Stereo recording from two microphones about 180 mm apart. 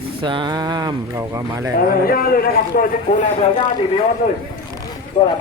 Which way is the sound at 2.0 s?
55° left (ahead or behind).